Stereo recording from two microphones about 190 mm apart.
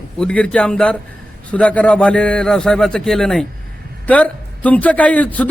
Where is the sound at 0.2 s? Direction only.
5° left (ahead or behind).